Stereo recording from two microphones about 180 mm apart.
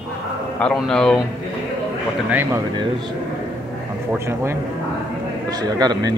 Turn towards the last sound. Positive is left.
turn(degrees=-20)  # may be behind; listen again after turning